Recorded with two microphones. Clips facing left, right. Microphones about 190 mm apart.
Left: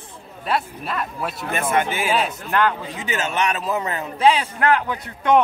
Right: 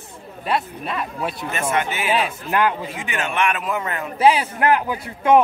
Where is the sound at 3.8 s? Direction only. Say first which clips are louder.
Left 1 dB; 30° left (ahead or behind).